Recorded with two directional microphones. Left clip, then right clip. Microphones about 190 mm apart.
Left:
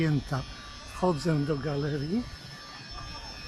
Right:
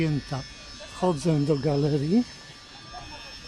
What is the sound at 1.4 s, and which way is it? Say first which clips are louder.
Speech: right 6 dB; 25° right (ahead or behind).